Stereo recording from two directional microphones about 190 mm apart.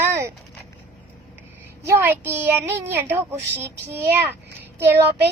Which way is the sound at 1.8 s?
15° right (ahead or behind).